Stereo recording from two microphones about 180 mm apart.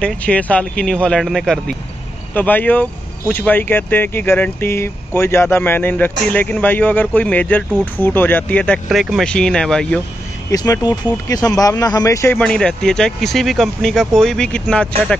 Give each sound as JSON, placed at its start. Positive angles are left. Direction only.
{"t": 0.0, "sound": "speech", "side_deg": 5}
{"t": 10.5, "sound": "speech", "side_deg": 20}